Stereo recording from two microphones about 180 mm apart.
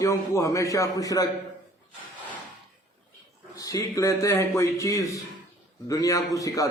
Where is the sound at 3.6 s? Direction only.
20° left (ahead or behind).